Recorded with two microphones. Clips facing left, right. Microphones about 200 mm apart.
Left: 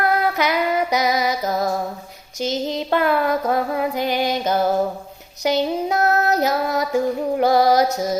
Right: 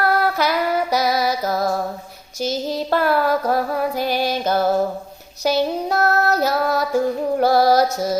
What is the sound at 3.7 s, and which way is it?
Music, 20° left (ahead or behind).